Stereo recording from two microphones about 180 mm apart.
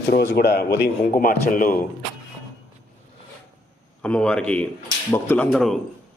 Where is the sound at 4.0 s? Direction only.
5° left (ahead or behind).